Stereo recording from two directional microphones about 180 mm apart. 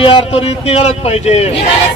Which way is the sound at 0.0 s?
30° left (ahead or behind).